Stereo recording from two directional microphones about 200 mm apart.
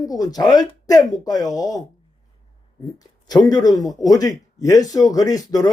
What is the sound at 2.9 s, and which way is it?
Speech, 20° left (ahead or behind).